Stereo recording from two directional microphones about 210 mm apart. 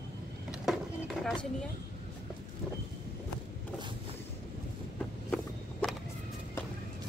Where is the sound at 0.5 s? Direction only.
Centre (ahead or behind).